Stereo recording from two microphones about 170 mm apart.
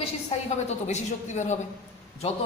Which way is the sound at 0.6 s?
45° left (ahead or behind).